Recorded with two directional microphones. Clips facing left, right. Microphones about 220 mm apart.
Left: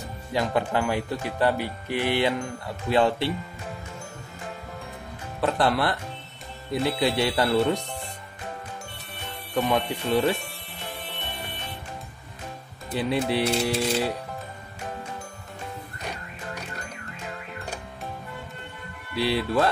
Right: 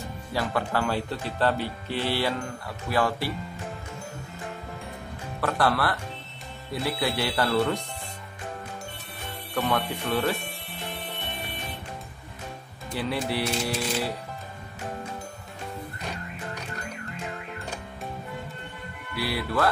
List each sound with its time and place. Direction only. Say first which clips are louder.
0.3 s speech: left 3 dB; 20° left (ahead or behind)
5.4 s speech: left 2 dB; 20° left (ahead or behind)
9.5 s speech: left 3 dB; 15° left (ahead or behind)
12.9 s speech: left 4 dB; 20° left (ahead or behind)
19.1 s speech: left 4 dB; 25° left (ahead or behind)